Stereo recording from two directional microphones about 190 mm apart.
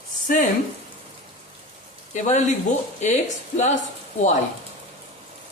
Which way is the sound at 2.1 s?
40° left (ahead or behind).